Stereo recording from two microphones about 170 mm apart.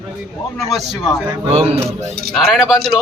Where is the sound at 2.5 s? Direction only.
Centre (ahead or behind).